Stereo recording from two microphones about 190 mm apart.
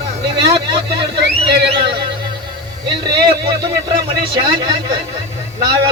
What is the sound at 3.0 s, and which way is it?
Speech, 60° right (ahead or behind).